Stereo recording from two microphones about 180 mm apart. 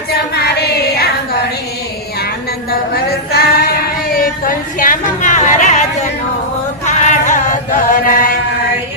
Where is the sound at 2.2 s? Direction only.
60° left (ahead or behind); by 6.0 s 40° left (ahead or behind).